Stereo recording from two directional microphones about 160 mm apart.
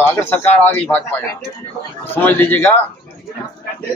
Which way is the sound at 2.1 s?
10° left (ahead or behind).